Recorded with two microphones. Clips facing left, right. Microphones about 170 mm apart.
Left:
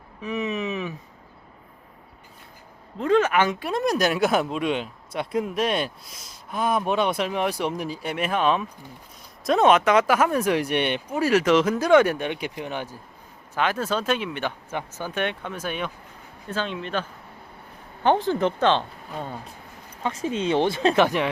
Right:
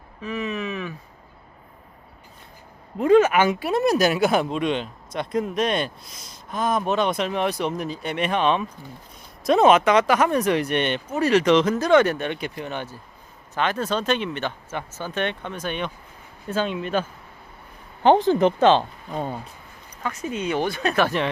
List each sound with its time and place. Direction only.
0.2 s a sound: 20° left (ahead or behind)
3.0 s speech: 10° right (ahead or behind)
16.5 s speech: 10° right (ahead or behind)
20.0 s speech: 30° left (ahead or behind)